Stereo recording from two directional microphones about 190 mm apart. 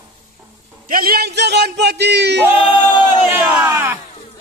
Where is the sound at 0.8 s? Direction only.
50° right (ahead or behind).